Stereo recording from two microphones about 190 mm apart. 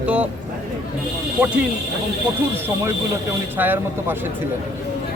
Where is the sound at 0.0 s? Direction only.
5° right (ahead or behind).